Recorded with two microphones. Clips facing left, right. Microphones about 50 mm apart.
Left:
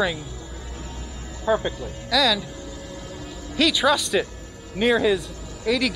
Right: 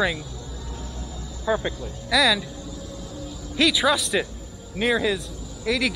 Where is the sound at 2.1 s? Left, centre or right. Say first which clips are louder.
Right 1 dB; centre.